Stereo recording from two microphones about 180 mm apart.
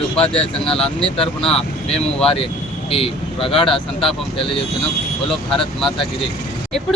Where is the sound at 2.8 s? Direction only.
30° left (ahead or behind).